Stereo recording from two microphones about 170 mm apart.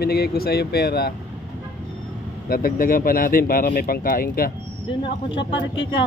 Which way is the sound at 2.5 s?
60° left (ahead or behind).